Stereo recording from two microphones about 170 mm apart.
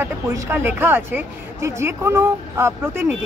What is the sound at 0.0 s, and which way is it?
Speech, 15° right (ahead or behind).